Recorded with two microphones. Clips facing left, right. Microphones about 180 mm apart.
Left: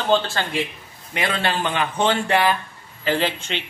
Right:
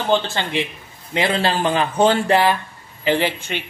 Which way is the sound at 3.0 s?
15° right (ahead or behind).